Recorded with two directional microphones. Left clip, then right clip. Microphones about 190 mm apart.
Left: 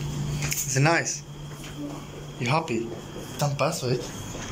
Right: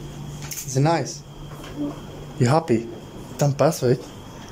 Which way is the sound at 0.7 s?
20° right (ahead or behind).